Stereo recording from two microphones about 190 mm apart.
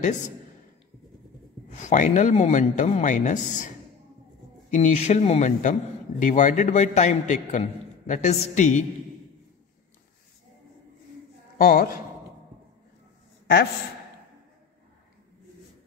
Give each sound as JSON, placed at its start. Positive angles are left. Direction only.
{"t": 1.7, "sound": "a man's voice", "side_deg": 40}
{"t": 11.5, "sound": "a woman's voice", "side_deg": 45}